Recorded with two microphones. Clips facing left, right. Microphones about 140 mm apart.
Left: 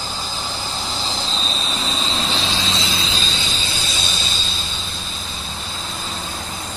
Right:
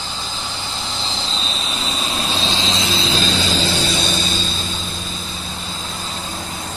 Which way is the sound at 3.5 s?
60° right (ahead or behind).